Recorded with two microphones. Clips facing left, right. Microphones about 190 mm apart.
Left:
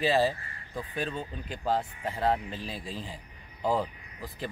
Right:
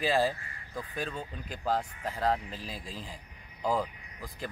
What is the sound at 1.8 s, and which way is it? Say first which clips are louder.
Speech: left 2 dB; 10° left (ahead or behind).